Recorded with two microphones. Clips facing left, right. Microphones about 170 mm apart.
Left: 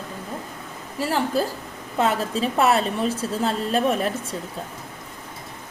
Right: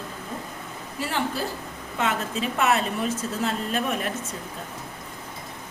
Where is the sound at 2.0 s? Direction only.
35° left (ahead or behind).